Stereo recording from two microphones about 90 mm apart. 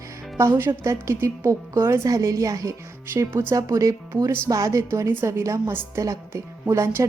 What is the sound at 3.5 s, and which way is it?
A woman's voice, 40° right (ahead or behind).